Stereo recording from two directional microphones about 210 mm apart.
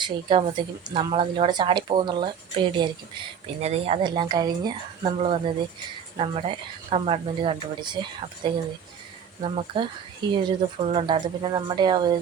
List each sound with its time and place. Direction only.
0.0 s speech: 25° right (ahead or behind)
3.4 s speech: 30° right (ahead or behind)